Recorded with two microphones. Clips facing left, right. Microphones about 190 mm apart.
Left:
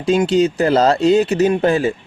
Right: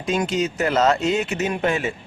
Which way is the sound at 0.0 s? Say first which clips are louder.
Left 8 dB; 30° left (ahead or behind).